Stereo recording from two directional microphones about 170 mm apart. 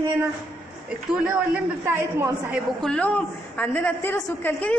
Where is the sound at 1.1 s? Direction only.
5° right (ahead or behind).